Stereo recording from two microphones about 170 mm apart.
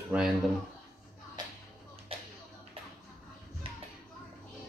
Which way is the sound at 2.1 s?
35° right (ahead or behind).